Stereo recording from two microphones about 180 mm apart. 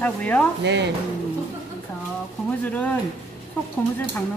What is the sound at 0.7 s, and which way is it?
Speech, 75° right (ahead or behind).